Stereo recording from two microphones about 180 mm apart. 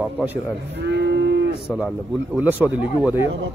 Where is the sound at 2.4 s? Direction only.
10° right (ahead or behind).